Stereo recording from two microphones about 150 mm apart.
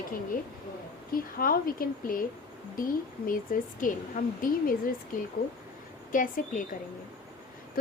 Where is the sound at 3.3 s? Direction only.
65° left (ahead or behind).